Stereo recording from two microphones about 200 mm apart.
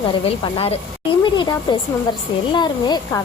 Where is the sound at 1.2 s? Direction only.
25° left (ahead or behind).